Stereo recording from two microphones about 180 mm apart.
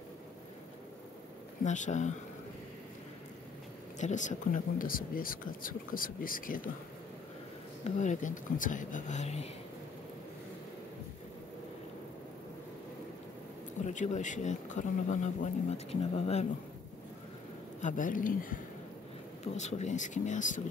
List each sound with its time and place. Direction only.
1.6 s speech: 45° left (ahead or behind)
4.0 s speech: 45° left (ahead or behind)
7.8 s speech: 40° left (ahead or behind)
13.8 s speech: 40° left (ahead or behind)
17.7 s speech: 45° left (ahead or behind)